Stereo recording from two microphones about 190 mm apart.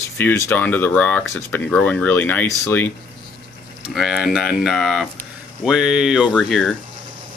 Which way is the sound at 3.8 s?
Centre (ahead or behind).